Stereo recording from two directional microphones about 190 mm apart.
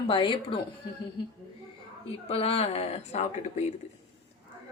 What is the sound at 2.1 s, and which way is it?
Speech, 30° left (ahead or behind).